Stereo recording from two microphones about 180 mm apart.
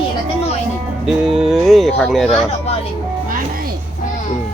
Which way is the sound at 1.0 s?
5° right (ahead or behind).